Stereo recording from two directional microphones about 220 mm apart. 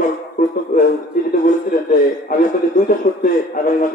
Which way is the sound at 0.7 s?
35° left (ahead or behind).